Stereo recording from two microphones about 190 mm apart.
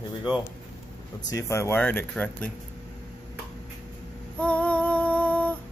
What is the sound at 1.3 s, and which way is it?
Speech, 15° left (ahead or behind).